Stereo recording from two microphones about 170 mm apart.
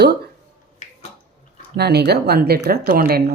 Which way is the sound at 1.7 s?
75° right (ahead or behind).